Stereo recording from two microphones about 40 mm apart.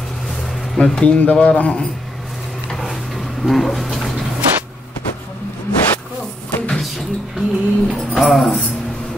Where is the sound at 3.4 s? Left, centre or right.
Centre.